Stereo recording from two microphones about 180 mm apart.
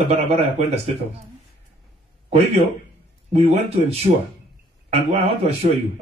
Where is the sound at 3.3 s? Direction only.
35° right (ahead or behind).